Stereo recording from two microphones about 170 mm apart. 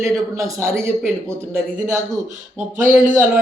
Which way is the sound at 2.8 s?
50° right (ahead or behind).